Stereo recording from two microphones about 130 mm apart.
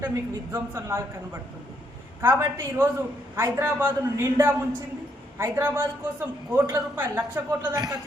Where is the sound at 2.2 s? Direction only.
20° right (ahead or behind).